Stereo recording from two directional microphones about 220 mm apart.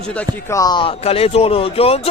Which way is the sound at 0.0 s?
5° left (ahead or behind).